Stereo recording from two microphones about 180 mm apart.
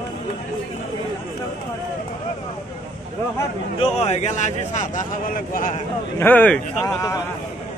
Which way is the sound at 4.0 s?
40° left (ahead or behind).